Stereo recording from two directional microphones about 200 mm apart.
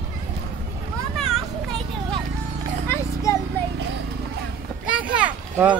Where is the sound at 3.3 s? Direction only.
15° left (ahead or behind).